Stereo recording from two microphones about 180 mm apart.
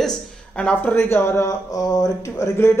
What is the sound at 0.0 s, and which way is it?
Speech, 5° left (ahead or behind).